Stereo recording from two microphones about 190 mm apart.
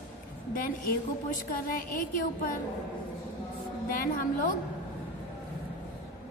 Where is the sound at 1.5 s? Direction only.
45° left (ahead or behind).